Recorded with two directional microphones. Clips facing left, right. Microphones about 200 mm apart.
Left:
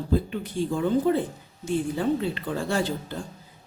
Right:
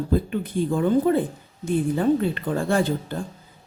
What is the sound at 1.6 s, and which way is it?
A woman's voice, 55° right (ahead or behind).